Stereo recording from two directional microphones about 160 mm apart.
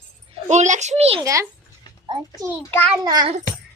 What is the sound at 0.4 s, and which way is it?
Speech, 45° right (ahead or behind).